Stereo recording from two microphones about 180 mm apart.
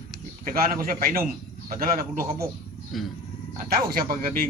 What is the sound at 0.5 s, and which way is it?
A man's voice, 50° right (ahead or behind).